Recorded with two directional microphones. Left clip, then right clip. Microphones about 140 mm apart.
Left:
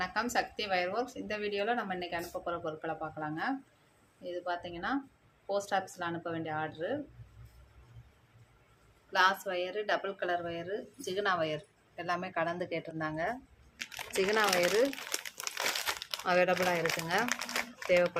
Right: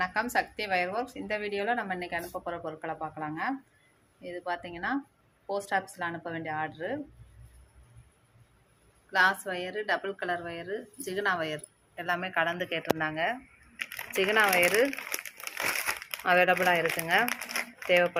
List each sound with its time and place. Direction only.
0.0 s a woman's voice: 20° right (ahead or behind)
9.1 s a woman's voice: 20° right (ahead or behind)
14.4 s crumpling: 10° right (ahead or behind)
16.2 s speech: 5° right (ahead or behind)